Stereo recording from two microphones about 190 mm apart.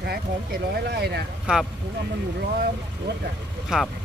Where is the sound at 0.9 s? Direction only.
60° right (ahead or behind).